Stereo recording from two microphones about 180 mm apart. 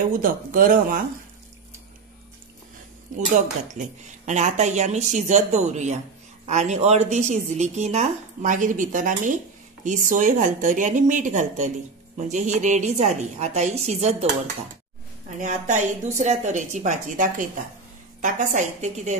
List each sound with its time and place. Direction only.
0.2 s a woman's voice: 50° right (ahead or behind)
3.8 s a woman's voice: 40° right (ahead or behind)
15.3 s a woman's voice: 45° right (ahead or behind)